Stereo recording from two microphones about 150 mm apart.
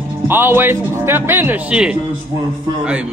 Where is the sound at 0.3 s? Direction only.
15° right (ahead or behind).